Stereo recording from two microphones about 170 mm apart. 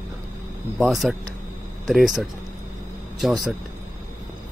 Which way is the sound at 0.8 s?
Centre (ahead or behind).